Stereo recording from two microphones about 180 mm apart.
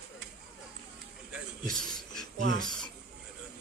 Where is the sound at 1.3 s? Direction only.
Centre (ahead or behind).